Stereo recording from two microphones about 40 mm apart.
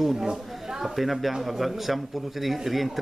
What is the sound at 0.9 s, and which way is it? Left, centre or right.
Speech, centre.